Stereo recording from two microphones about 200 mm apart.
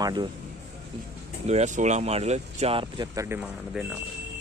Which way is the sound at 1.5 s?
35° right (ahead or behind).